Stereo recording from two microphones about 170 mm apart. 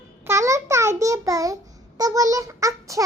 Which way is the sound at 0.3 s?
15° right (ahead or behind).